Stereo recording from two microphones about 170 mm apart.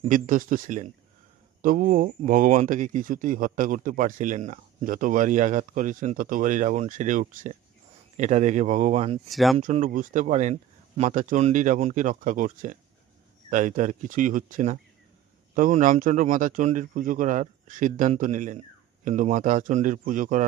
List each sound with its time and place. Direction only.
0.1 s speech: 55° right (ahead or behind)
9.3 s speech: centre (ahead or behind)
9.6 s speech: 50° right (ahead or behind)